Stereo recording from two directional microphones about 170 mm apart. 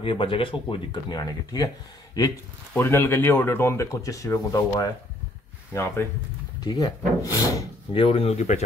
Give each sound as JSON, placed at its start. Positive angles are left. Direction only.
{"t": 0.0, "sound": "a man's voice", "side_deg": 30}
{"t": 7.9, "sound": "speech", "side_deg": 35}